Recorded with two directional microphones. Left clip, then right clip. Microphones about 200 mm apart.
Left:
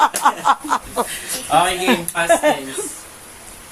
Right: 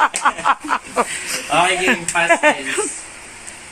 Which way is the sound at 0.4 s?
5° left (ahead or behind).